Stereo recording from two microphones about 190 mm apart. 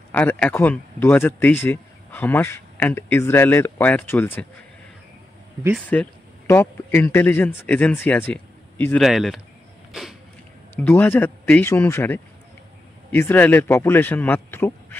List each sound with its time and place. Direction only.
0.1 s speech: 10° left (ahead or behind)
5.9 s speech: 10° left (ahead or behind)
10.8 s speech: 10° left (ahead or behind)